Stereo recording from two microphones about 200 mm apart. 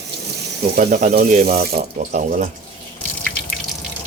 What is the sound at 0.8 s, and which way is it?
Speech, 50° right (ahead or behind).